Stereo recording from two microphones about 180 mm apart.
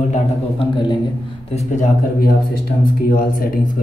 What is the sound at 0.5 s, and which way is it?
Speech, 25° left (ahead or behind).